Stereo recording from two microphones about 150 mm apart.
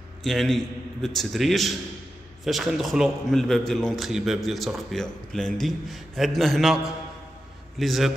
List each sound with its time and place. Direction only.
0.2 s a man's voice: centre (ahead or behind)